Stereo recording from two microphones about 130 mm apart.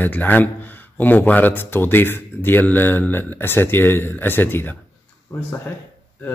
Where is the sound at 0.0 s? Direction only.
15° left (ahead or behind).